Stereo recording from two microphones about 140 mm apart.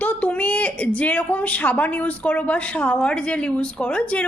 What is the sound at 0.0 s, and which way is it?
A woman's voice, 10° left (ahead or behind).